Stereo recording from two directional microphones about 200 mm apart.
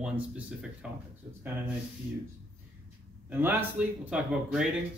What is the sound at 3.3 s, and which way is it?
Speech, 10° right (ahead or behind).